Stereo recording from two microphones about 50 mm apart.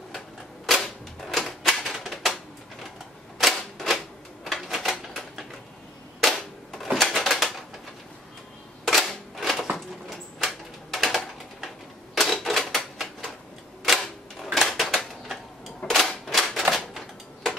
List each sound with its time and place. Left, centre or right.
0.7 s typewriter: centre
3.3 s typewriter: centre
8.8 s a sound: centre
12.2 s typewriter: centre
13.9 s a sound: centre
15.9 s typewriter: centre